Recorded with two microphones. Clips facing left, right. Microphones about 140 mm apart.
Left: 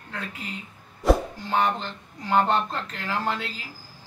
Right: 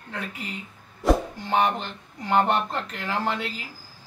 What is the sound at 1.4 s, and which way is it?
Speech, 20° right (ahead or behind).